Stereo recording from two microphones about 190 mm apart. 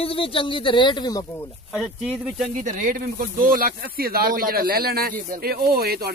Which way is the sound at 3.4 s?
50° right (ahead or behind).